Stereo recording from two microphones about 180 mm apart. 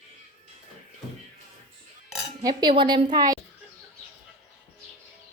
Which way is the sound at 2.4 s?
20° right (ahead or behind).